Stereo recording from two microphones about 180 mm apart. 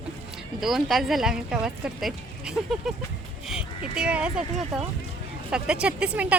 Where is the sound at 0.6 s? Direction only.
Centre (ahead or behind).